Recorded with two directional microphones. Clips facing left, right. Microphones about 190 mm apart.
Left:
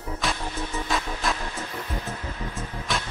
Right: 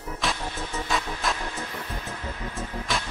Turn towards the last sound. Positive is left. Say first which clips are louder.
# even
turn(degrees=0)  # may be behind; listen again after turning